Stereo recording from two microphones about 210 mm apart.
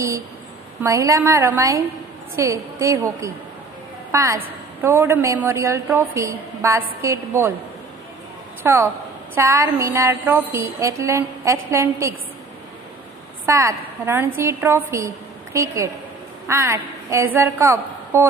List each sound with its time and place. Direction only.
0.8 s a woman's voice: 15° right (ahead or behind)
8.6 s a woman's voice: 10° right (ahead or behind)
13.5 s a woman's voice: 15° right (ahead or behind)